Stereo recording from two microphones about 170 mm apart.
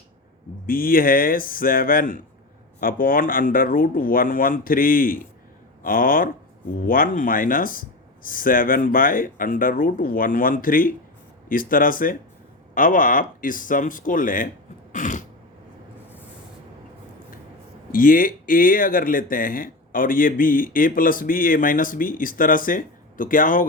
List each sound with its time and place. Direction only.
0.7 s speech: 55° left (ahead or behind)
14.9 s throat clearing: 50° left (ahead or behind)
17.9 s speech: 55° left (ahead or behind)